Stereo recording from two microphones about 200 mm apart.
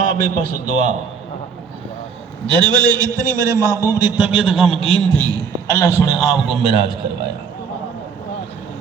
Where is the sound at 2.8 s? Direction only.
20° right (ahead or behind); by 5.2 s centre (ahead or behind).